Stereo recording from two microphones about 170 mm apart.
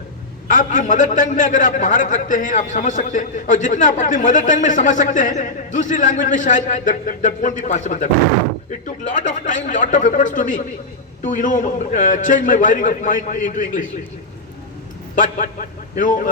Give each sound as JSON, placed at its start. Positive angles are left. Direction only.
{"t": 0.4, "sound": "a man's voice", "side_deg": 50}
{"t": 9.0, "sound": "a man's voice", "side_deg": 45}
{"t": 15.1, "sound": "a man's voice", "side_deg": 50}